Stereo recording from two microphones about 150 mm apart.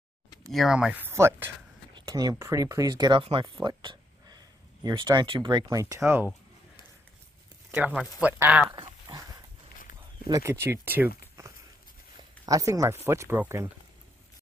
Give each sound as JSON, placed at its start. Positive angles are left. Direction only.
{"t": 0.5, "sound": "speech", "side_deg": 0}
{"t": 2.0, "sound": "speech", "side_deg": -25}
{"t": 3.6, "sound": "a sound", "side_deg": -30}
{"t": 4.8, "sound": "speech", "side_deg": -25}
{"t": 7.7, "sound": "speech", "side_deg": -10}
{"t": 8.6, "sound": "dog", "side_deg": -30}
{"t": 10.2, "sound": "speech", "side_deg": -20}
{"t": 12.4, "sound": "speech", "side_deg": -25}